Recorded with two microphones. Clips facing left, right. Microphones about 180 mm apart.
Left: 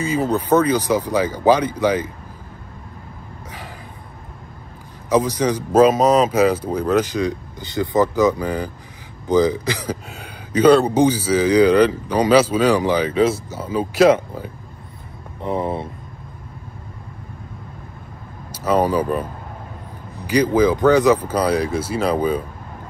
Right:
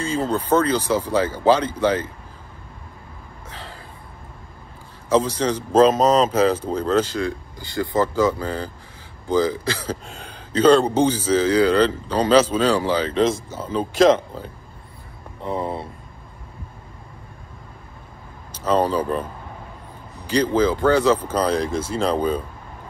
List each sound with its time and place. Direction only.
0.0 s speech: 10° left (ahead or behind)
5.1 s speech: 10° left (ahead or behind)
18.5 s speech: 10° left (ahead or behind)
20.2 s speech: 10° left (ahead or behind)